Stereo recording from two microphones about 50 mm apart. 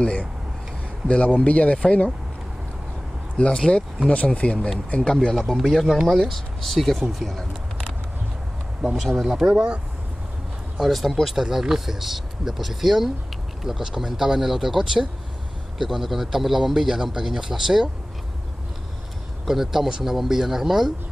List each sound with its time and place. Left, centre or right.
1.0 s speech: left
3.3 s speech: centre
5.7 s speech: centre
8.8 s a man's voice: centre
10.8 s a man's voice: centre
19.4 s speech: centre